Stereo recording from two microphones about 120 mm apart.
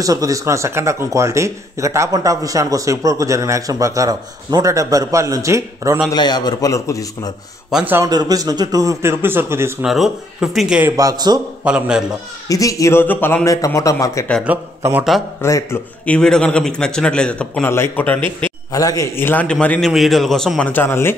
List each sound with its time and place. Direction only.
0.0 s speech: 30° right (ahead or behind)
6.1 s a man's voice: 35° left (ahead or behind)
8.0 s speech: 30° right (ahead or behind)
9.8 s a man's voice: 5° right (ahead or behind)
11.0 s a man's voice: 30° right (ahead or behind)
11.6 s a man's voice: 10° right (ahead or behind)
12.4 s a man's voice: 30° left (ahead or behind)
14.4 s a man's voice: 15° right (ahead or behind)
15.4 s a man's voice: 25° left (ahead or behind)
16.1 s a man's voice: 5° left (ahead or behind)
18.7 s a man's voice: 30° left (ahead or behind)
19.1 s a man's voice: 15° left (ahead or behind)